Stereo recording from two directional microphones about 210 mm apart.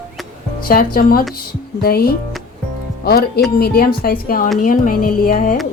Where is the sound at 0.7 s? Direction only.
45° left (ahead or behind).